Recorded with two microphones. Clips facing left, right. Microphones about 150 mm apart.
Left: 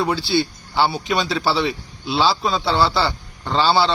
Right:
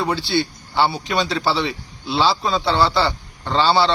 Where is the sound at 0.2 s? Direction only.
20° right (ahead or behind).